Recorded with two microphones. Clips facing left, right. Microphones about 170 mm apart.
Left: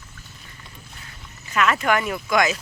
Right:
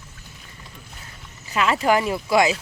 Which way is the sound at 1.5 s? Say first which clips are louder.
Right 1 dB; 30° right (ahead or behind).